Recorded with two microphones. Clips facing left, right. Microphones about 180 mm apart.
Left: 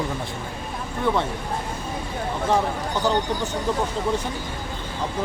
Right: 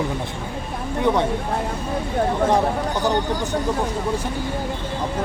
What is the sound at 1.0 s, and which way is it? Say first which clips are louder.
Speech: right 3 dB; 20° right (ahead or behind).